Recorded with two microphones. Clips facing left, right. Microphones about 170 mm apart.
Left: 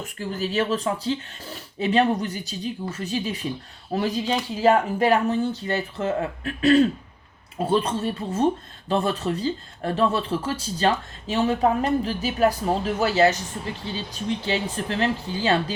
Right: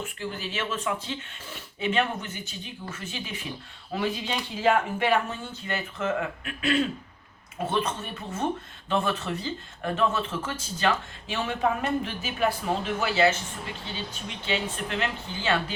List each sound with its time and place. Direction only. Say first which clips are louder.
0.0 s speech: left 5 dB; 40° left (ahead or behind)